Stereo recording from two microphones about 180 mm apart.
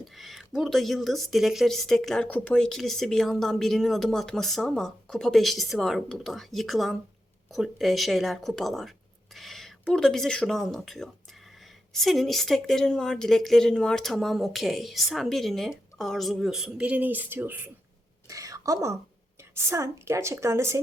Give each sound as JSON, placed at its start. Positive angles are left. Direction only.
{"t": 0.0, "sound": "speech", "side_deg": 0}